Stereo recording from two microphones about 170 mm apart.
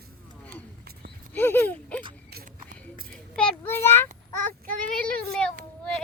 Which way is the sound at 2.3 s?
60° right (ahead or behind).